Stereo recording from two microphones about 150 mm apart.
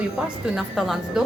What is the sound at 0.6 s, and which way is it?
Speech, centre (ahead or behind).